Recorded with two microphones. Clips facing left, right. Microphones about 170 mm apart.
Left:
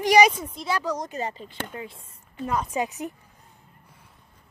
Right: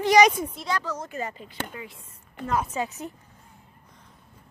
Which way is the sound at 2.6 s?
15° left (ahead or behind).